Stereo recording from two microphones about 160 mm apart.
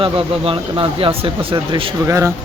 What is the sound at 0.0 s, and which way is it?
Speech, 35° right (ahead or behind).